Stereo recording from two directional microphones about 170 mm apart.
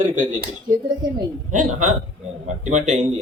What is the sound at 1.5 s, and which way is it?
A man's voice, 45° right (ahead or behind).